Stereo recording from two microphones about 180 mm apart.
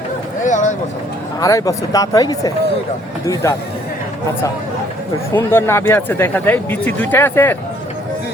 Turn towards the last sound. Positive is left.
turn(degrees=10)  # may be behind; listen again after turning